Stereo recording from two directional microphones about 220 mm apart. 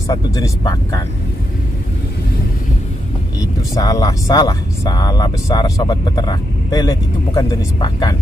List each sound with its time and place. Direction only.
0.1 s speech: 15° left (ahead or behind)
3.7 s speech: 15° left (ahead or behind)